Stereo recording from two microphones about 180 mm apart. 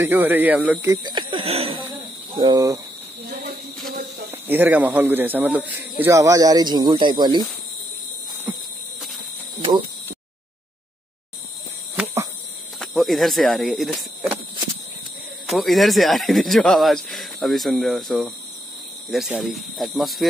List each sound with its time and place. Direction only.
0.0 s speech: 10° right (ahead or behind)
1.0 s speech: 25° right (ahead or behind)
4.3 s speech: 10° right (ahead or behind)
12.0 s a sound: 10° right (ahead or behind)
12.7 s speech: centre (ahead or behind)
15.4 s speech: centre (ahead or behind)